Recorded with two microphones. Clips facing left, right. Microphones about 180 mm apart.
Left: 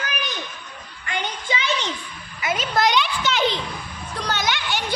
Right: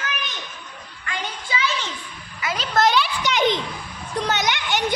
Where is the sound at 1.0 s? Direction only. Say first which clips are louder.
Left 2 dB; 25° left (ahead or behind).